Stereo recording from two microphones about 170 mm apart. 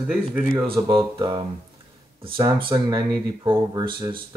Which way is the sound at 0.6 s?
30° right (ahead or behind).